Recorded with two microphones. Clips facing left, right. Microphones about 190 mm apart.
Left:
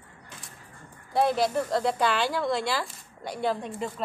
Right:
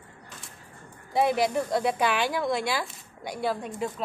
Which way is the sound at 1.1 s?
15° right (ahead or behind).